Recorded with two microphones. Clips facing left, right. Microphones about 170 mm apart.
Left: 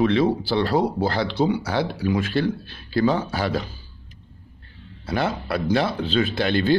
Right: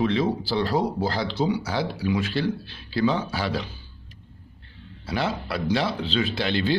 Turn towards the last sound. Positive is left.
turn(degrees=50)  # may be behind; listen again after turning